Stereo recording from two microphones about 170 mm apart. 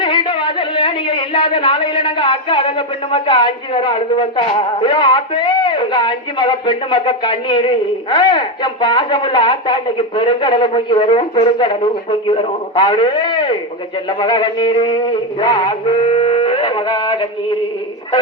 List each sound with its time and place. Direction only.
0.0 s a man's voice: 30° left (ahead or behind)